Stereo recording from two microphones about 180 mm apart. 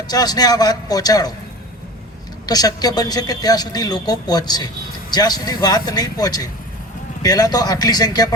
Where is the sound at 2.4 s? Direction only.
20° left (ahead or behind).